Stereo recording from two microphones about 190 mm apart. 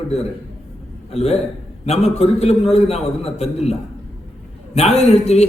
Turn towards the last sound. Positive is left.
turn(degrees=35)  # may be behind; listen again after turning